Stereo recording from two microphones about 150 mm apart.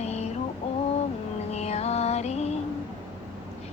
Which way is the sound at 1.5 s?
45° left (ahead or behind).